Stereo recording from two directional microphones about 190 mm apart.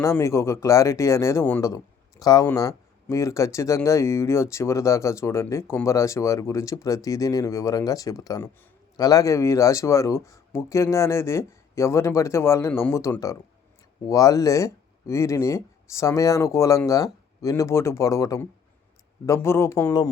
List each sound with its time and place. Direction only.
0.0 s speech: 15° left (ahead or behind)